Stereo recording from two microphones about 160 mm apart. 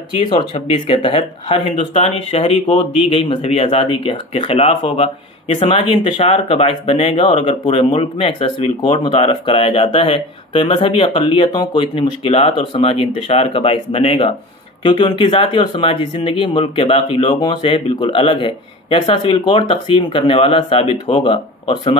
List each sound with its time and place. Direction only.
0.2 s speech: 30° left (ahead or behind)